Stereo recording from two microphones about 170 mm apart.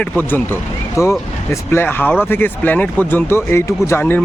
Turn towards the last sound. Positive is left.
turn(degrees=15)  # may be behind; listen again after turning